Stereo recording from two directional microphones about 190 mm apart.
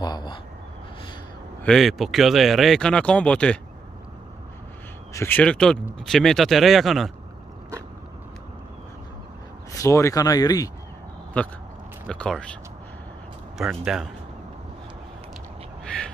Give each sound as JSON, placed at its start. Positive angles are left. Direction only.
{"t": 0.0, "sound": "a sound", "side_deg": 20}
{"t": 1.6, "sound": "speech", "side_deg": 0}
{"t": 5.1, "sound": "speech", "side_deg": 10}
{"t": 9.7, "sound": "speech", "side_deg": 15}
{"t": 12.1, "sound": "speech", "side_deg": 5}
{"t": 13.6, "sound": "speech", "side_deg": 0}